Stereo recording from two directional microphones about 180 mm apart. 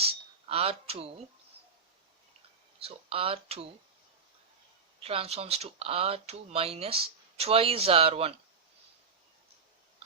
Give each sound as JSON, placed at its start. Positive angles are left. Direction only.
{"t": 0.0, "sound": "speech", "side_deg": -35}
{"t": 2.8, "sound": "speech", "side_deg": -30}
{"t": 5.0, "sound": "speech", "side_deg": -35}